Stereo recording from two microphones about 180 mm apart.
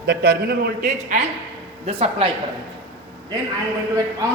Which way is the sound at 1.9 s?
30° right (ahead or behind).